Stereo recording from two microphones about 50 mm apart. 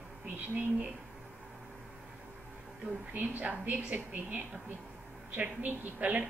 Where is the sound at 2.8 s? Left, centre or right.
Right.